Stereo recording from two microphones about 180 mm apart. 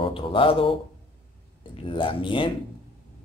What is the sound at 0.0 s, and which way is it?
Speech, 30° left (ahead or behind).